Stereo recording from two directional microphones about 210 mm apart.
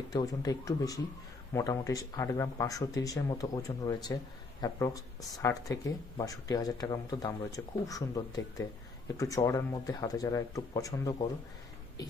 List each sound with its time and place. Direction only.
0.1 s speech: 15° left (ahead or behind)